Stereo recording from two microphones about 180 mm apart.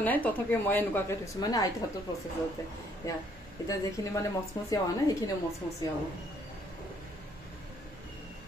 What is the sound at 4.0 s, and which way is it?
Speech, 20° left (ahead or behind).